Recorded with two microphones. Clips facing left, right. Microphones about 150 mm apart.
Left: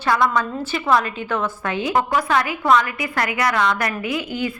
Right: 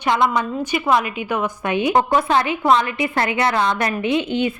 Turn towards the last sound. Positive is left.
turn(degrees=-25)  # may be behind; listen again after turning